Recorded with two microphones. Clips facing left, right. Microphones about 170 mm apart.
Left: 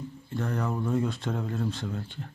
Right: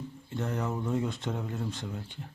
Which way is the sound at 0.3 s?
20° right (ahead or behind).